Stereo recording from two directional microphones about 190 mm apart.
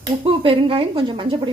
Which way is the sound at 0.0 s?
30° right (ahead or behind).